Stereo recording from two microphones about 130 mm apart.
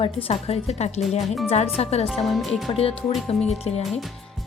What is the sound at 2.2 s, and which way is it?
Music, centre (ahead or behind).